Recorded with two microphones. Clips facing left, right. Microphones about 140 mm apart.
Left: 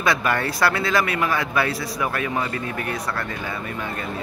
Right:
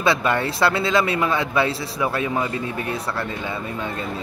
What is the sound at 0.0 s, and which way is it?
Speech, 25° right (ahead or behind).